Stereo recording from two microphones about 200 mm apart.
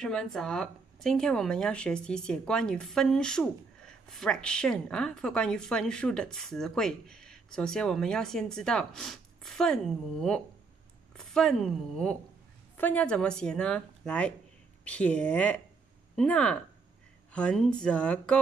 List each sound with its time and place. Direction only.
0.0 s speech: 5° left (ahead or behind)
11.1 s speech: 5° left (ahead or behind)